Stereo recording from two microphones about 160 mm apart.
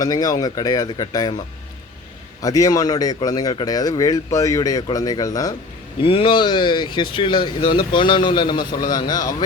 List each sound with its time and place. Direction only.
0.0 s speech: 25° left (ahead or behind)
2.4 s speech: 20° left (ahead or behind)
6.0 s speech: 35° left (ahead or behind)